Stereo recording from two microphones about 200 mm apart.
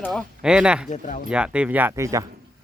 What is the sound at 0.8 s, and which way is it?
Speech, 40° left (ahead or behind).